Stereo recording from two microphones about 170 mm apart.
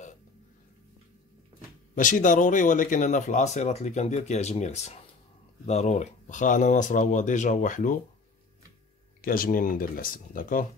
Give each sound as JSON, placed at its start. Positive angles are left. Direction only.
{"t": 2.0, "sound": "speech", "side_deg": 50}
{"t": 9.2, "sound": "speech", "side_deg": 55}